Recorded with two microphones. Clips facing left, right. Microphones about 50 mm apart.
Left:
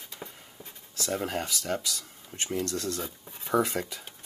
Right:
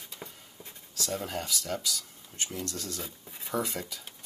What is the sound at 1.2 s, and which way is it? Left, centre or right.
Speech, left.